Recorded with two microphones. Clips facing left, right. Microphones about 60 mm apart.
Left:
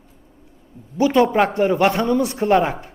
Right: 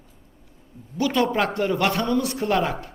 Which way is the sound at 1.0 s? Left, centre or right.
Left.